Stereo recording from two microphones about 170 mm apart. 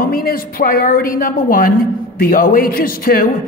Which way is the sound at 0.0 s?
60° left (ahead or behind).